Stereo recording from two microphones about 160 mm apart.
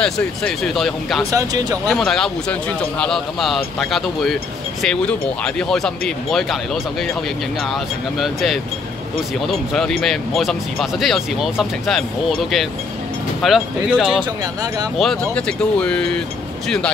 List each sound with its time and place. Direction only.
0.0 s speech: 5° left (ahead or behind)
1.3 s speech: 25° right (ahead or behind)
1.9 s speech: centre (ahead or behind)